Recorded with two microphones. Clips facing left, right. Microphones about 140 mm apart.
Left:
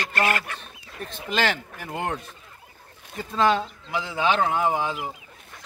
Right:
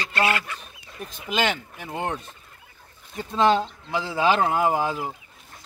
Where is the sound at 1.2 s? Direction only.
5° right (ahead or behind).